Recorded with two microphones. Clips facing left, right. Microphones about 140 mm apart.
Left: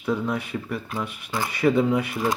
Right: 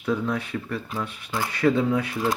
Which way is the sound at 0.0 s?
10° left (ahead or behind).